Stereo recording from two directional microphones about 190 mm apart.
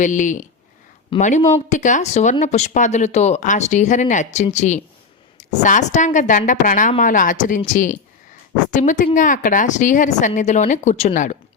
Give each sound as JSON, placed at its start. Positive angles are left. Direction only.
{"t": 0.0, "sound": "a woman's voice", "side_deg": 40}